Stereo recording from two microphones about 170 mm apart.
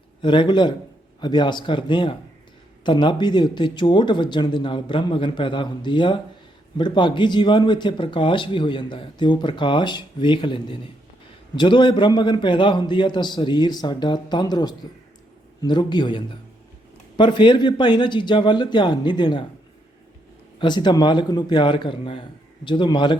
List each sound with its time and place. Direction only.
0.2 s speech: 30° left (ahead or behind)
20.6 s speech: 25° left (ahead or behind)